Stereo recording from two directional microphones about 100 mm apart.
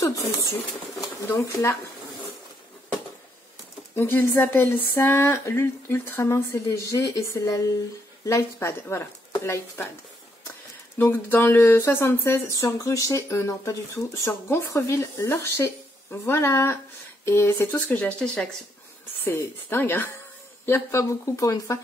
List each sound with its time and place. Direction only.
0.0 s speech: 30° left (ahead or behind)
3.9 s speech: 20° left (ahead or behind)
11.0 s speech: 20° left (ahead or behind)
17.8 s speech: 15° left (ahead or behind)
19.2 s speech: 20° left (ahead or behind)